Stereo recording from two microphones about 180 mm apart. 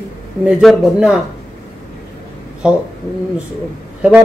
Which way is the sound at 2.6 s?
5° right (ahead or behind).